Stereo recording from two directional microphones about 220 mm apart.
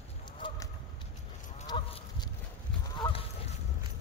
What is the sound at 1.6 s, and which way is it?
Livestock, 20° left (ahead or behind).